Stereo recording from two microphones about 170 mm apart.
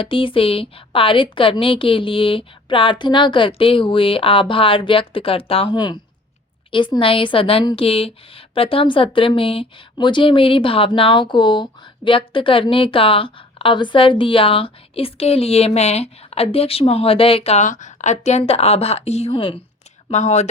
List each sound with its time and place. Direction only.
0.0 s a woman's voice: 30° left (ahead or behind)